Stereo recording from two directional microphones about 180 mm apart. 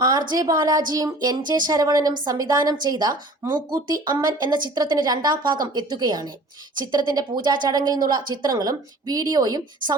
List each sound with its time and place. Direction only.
0.0 s a woman's voice: 20° right (ahead or behind)